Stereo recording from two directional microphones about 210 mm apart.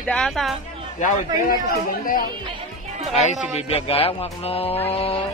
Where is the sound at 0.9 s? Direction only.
40° left (ahead or behind).